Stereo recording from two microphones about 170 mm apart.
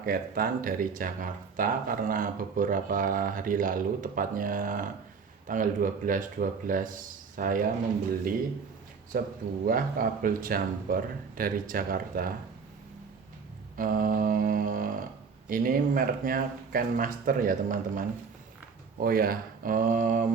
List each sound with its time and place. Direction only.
0.0 s speech: 60° right (ahead or behind)
9.1 s speech: 60° right (ahead or behind)
13.7 s speech: 55° right (ahead or behind)